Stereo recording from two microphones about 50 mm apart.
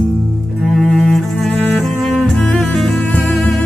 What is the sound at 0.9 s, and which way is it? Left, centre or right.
Cello, centre.